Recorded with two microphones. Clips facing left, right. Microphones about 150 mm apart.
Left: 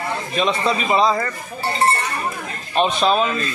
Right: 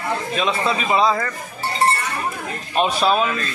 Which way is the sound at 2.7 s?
10° right (ahead or behind).